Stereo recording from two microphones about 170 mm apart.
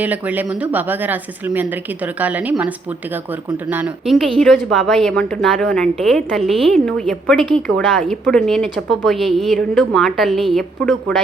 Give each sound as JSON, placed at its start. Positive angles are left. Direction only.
{"t": 0.0, "sound": "a woman's voice", "side_deg": -10}